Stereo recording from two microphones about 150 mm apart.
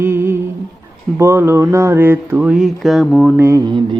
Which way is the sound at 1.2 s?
15° right (ahead or behind).